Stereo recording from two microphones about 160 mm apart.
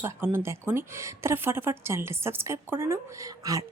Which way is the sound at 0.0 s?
15° right (ahead or behind).